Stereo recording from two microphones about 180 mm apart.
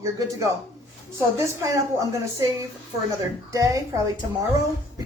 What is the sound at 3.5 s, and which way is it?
Speech, 20° right (ahead or behind).